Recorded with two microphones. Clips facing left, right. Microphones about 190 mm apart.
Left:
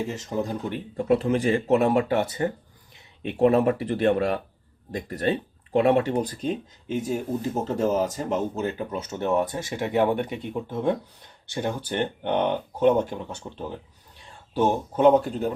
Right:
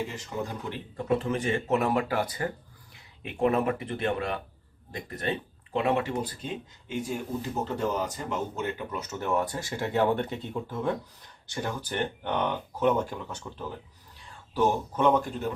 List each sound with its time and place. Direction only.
0.1 s speech: 40° left (ahead or behind)